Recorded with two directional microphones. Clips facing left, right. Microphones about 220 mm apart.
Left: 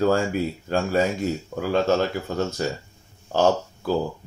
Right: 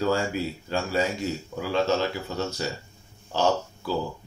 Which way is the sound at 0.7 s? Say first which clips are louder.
Left 4 dB; 50° left (ahead or behind).